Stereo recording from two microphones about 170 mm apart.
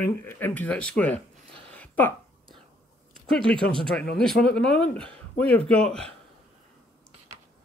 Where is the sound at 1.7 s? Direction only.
10° left (ahead or behind).